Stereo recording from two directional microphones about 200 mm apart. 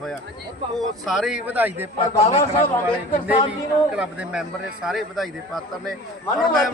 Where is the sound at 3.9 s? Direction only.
5° right (ahead or behind).